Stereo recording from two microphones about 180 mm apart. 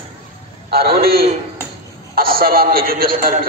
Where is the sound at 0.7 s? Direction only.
60° right (ahead or behind).